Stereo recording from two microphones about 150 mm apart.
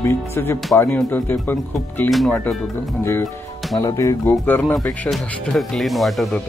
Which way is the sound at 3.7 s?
20° left (ahead or behind).